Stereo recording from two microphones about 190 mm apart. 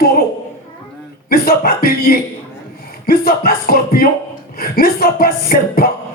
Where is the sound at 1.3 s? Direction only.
50° left (ahead or behind).